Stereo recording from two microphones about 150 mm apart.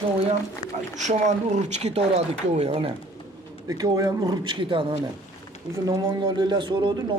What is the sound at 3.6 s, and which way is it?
Speech, 25° right (ahead or behind).